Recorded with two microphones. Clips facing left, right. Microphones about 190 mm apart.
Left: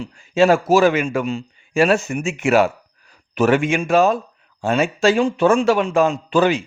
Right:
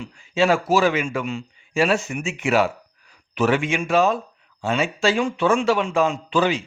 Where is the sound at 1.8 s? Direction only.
50° left (ahead or behind).